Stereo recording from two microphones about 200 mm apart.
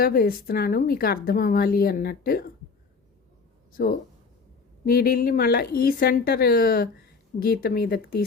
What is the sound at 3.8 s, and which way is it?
Speech, 50° left (ahead or behind).